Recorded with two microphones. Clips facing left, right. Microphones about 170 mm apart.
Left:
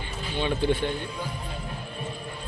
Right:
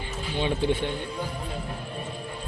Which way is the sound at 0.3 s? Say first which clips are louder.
Even; 30° right (ahead or behind).